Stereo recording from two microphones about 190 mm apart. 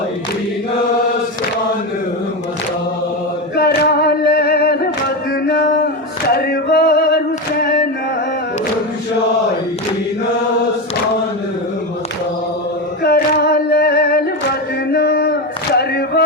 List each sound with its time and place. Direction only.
3.5 s singing: 55° left (ahead or behind)
5.3 s a sound: 60° left (ahead or behind)
6.2 s male singing: 55° left (ahead or behind)
7.6 s music: 55° left (ahead or behind)
13.0 s singing: 55° left (ahead or behind)
14.9 s male singing: 55° left (ahead or behind)